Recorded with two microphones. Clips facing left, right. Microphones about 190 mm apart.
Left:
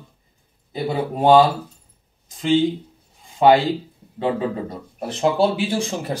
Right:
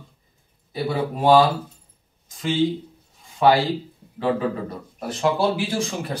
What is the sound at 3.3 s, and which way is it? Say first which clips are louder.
Speech: left 3 dB; 25° left (ahead or behind).